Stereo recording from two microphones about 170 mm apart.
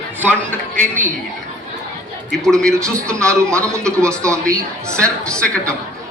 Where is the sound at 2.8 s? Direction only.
20° right (ahead or behind).